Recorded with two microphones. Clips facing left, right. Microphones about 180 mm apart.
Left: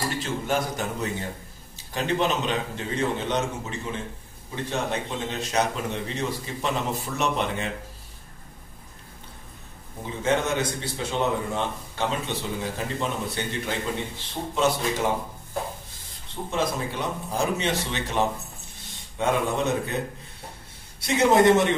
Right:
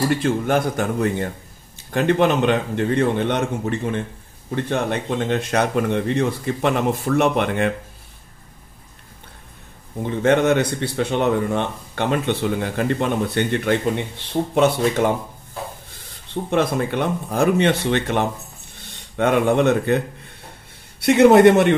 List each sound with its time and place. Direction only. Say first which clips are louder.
0.1 s speech: right 8 dB; 60° right (ahead or behind)
10.0 s speech: right 8 dB; 65° right (ahead or behind)
16.4 s speech: right 7 dB; 60° right (ahead or behind)
21.0 s speech: right 8 dB; 65° right (ahead or behind)